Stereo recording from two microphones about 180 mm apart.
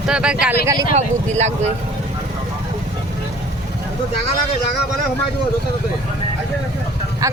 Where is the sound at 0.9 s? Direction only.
40° right (ahead or behind).